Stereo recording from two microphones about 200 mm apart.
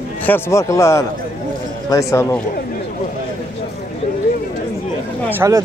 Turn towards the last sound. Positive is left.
turn(degrees=-15)  # may be behind; listen again after turning